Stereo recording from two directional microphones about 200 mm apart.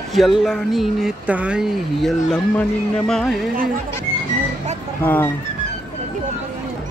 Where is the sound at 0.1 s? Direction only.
Centre (ahead or behind).